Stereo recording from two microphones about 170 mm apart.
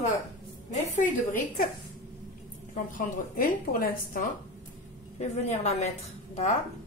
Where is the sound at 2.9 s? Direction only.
55° left (ahead or behind).